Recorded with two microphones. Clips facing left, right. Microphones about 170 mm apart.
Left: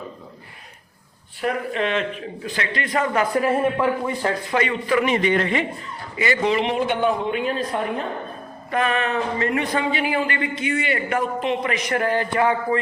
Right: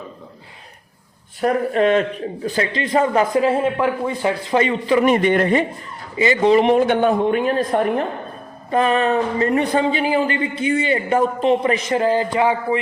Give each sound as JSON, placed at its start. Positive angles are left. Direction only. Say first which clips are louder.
{"t": 1.4, "sound": "a man's voice", "louder": "right 6 dB", "side_deg": -40}
{"t": 4.5, "sound": "a man's voice", "louder": "right 5 dB", "side_deg": -30}
{"t": 5.0, "sound": "a woman's voice", "louder": "right 5 dB", "side_deg": -50}
{"t": 6.1, "sound": "a man's voice", "louder": "right 5 dB", "side_deg": -20}
{"t": 6.4, "sound": "a woman's voice", "louder": "right 9 dB", "side_deg": -40}
{"t": 8.7, "sound": "a man's voice", "louder": "right 5 dB", "side_deg": -30}